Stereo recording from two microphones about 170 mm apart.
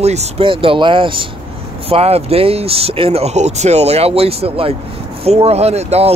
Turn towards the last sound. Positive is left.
turn(degrees=-35)  # may be behind; listen again after turning